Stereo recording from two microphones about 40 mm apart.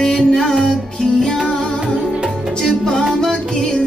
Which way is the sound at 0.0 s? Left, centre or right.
Centre.